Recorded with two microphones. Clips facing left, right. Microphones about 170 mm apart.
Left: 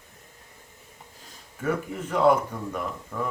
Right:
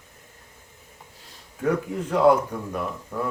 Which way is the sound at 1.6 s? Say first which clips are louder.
Right 4 dB; 10° right (ahead or behind).